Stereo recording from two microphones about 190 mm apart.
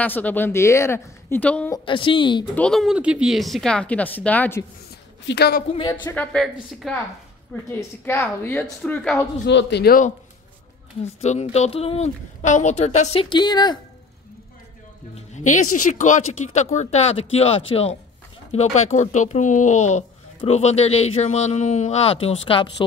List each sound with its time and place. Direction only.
0.0 s a woman's voice: 10° left (ahead or behind)
1.7 s a woman's voice: 25° left (ahead or behind)
2.5 s speech: 5° left (ahead or behind)
5.2 s a man's voice: 60° left (ahead or behind)
5.7 s a woman's voice: 25° left (ahead or behind)
6.0 s a woman's voice: 5° left (ahead or behind)
9.5 s a man's voice: 65° left (ahead or behind)
11.1 s speech: 35° left (ahead or behind)
15.1 s speech: 40° left (ahead or behind)